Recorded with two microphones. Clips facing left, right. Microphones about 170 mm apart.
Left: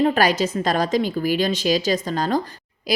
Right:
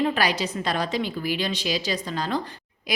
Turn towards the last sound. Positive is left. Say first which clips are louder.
# left 7 dB
turn(degrees=35)  # may be behind; listen again after turning